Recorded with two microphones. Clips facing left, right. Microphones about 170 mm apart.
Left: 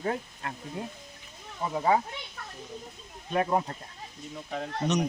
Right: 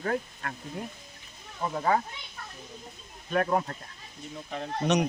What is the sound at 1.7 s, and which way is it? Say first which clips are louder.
Speech: left 2 dB; 15° left (ahead or behind).